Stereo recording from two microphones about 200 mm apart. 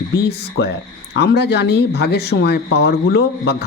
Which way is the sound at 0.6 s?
70° left (ahead or behind).